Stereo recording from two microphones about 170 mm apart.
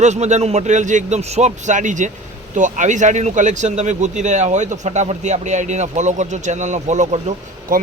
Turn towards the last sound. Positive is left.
turn(degrees=-45)  # may be behind; listen again after turning